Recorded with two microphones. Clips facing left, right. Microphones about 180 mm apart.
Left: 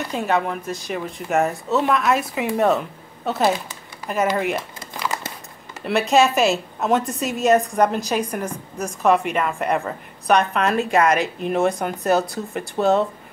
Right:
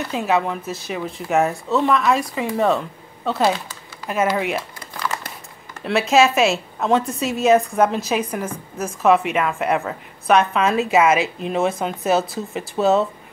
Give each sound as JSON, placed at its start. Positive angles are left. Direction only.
{"t": 0.1, "sound": "a woman's voice", "side_deg": 0}
{"t": 4.9, "sound": "crumpling", "side_deg": 15}
{"t": 5.8, "sound": "a woman's voice", "side_deg": 0}